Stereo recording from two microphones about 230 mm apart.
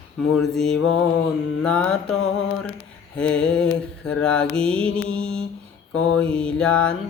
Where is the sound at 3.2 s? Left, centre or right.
Centre.